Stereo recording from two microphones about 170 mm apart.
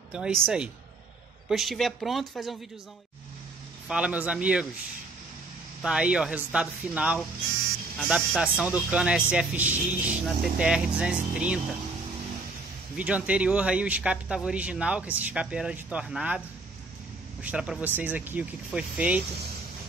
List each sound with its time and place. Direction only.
0.1 s speech: 5° right (ahead or behind)
3.9 s speech: 5° right (ahead or behind)
5.8 s speech: 5° right (ahead or behind)
12.9 s speech: 10° right (ahead or behind)